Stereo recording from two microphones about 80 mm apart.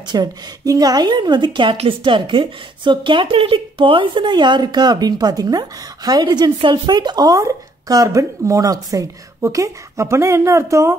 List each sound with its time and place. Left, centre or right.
0.0 s speech: right
0.7 s a woman's voice: right